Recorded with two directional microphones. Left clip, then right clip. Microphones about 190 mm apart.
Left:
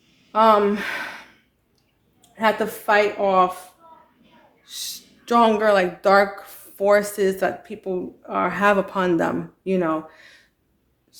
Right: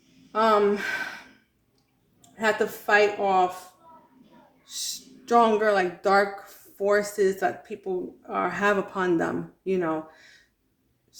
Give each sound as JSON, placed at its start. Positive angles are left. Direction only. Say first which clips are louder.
{"t": 0.3, "sound": "speech", "louder": "left 5 dB", "side_deg": 40}
{"t": 2.3, "sound": "speech", "louder": "left 4 dB", "side_deg": 40}
{"t": 4.6, "sound": "speech", "louder": "left 1 dB", "side_deg": 40}